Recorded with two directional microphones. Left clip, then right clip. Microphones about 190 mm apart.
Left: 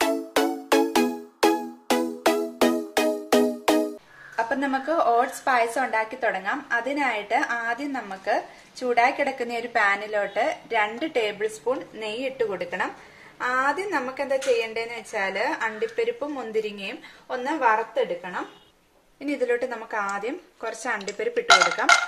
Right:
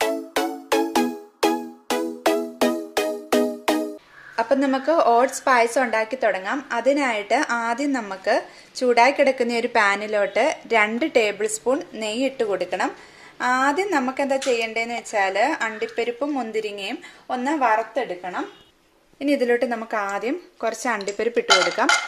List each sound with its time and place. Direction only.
0.0 s music: centre (ahead or behind)
4.4 s a woman's voice: 50° right (ahead or behind)
19.1 s a woman's voice: 50° right (ahead or behind)